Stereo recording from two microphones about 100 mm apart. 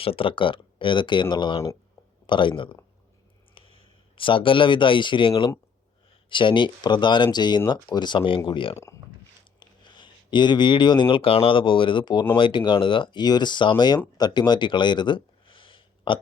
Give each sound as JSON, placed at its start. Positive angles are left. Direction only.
{"t": 0.0, "sound": "speech", "side_deg": 65}
{"t": 3.5, "sound": "a sound", "side_deg": 60}
{"t": 6.2, "sound": "speech", "side_deg": 55}
{"t": 8.7, "sound": "speech", "side_deg": 30}
{"t": 9.6, "sound": "speech", "side_deg": 50}